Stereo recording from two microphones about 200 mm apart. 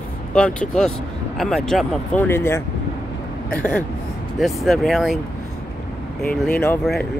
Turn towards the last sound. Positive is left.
turn(degrees=5)  # may be behind; listen again after turning